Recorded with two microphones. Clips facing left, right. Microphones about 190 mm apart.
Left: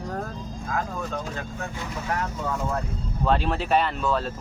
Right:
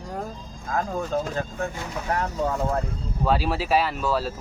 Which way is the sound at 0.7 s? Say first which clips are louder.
Right 5 dB; 35° right (ahead or behind).